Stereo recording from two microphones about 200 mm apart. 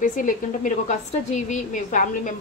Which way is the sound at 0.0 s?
40° left (ahead or behind).